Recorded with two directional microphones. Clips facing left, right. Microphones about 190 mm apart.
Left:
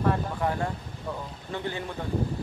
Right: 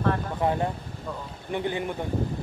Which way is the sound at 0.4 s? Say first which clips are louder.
Right 3 dB; 20° right (ahead or behind).